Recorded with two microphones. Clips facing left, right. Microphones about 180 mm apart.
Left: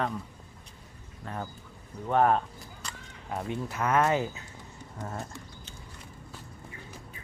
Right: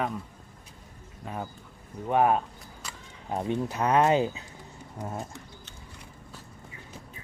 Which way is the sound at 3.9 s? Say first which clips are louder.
Right 3 dB; 20° right (ahead or behind).